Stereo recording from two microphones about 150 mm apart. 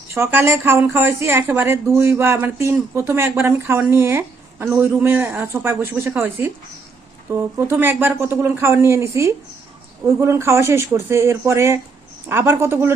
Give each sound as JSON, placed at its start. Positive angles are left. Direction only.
{"t": 0.1, "sound": "speech", "side_deg": -15}